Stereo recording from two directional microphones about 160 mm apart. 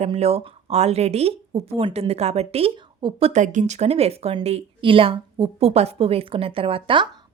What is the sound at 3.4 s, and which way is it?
A woman's voice, 50° right (ahead or behind).